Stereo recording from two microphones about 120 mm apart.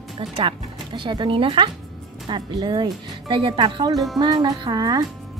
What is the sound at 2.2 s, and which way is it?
Speech, 40° right (ahead or behind).